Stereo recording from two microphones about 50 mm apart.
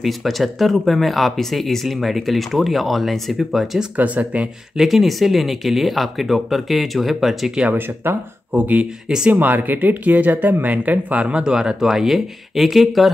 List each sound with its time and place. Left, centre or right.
0.0 s speech: centre
3.9 s speech: right
4.7 s speech: centre
7.7 s speech: right
8.5 s speech: right; by 13.1 s centre